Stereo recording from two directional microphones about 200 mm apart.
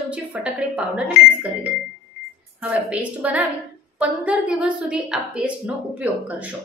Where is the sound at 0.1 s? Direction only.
5° right (ahead or behind).